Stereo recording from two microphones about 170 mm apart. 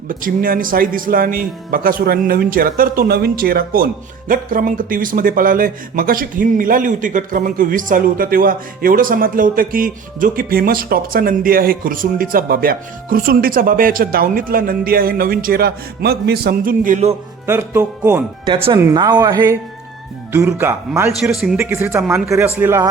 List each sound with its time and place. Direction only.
0.1 s speech: 55° right (ahead or behind)
17.4 s speech: 15° right (ahead or behind)
18.4 s speech: 30° right (ahead or behind)
18.8 s a man's voice: 20° right (ahead or behind)
21.2 s a man's voice: 5° right (ahead or behind)
21.6 s speech: 15° right (ahead or behind)